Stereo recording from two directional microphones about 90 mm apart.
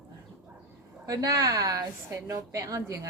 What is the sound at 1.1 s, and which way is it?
A woman's voice, 45° right (ahead or behind).